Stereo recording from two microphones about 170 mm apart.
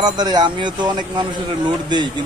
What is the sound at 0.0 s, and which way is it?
Speech, 25° right (ahead or behind).